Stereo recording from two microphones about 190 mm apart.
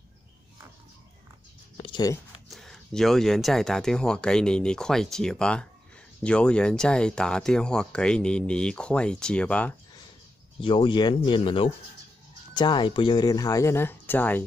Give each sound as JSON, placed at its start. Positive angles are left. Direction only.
{"t": 1.8, "sound": "a sound", "side_deg": 25}
{"t": 2.5, "sound": "speech", "side_deg": 0}
{"t": 10.6, "sound": "speech", "side_deg": 25}